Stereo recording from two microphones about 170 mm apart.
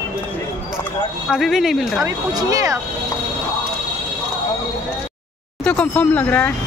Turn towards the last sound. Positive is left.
turn(degrees=10)  # may be behind; listen again after turning